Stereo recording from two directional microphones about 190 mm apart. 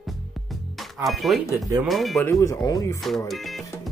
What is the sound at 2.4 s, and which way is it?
Speech, 15° left (ahead or behind).